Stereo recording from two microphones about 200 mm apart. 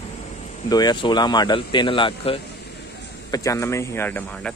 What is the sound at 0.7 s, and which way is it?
A man's voice, 20° left (ahead or behind).